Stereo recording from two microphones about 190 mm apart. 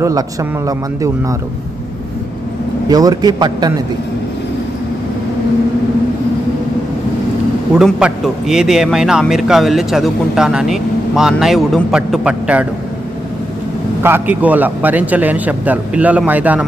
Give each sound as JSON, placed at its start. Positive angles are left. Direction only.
{"t": 0.0, "sound": "a man's voice", "side_deg": -15}
{"t": 2.9, "sound": "a man's voice", "side_deg": -20}
{"t": 7.7, "sound": "a man's voice", "side_deg": 0}
{"t": 14.0, "sound": "a man's voice", "side_deg": -10}